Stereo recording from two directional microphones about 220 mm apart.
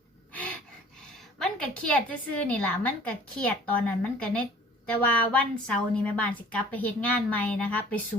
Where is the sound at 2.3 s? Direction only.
5° left (ahead or behind).